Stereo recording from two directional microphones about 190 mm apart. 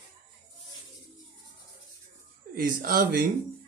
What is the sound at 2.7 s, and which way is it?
Mantra, 45° right (ahead or behind).